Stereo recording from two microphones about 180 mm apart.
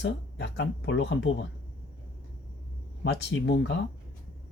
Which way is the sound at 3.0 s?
80° left.